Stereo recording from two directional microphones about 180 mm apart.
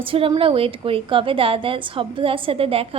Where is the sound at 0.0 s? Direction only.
30° right (ahead or behind).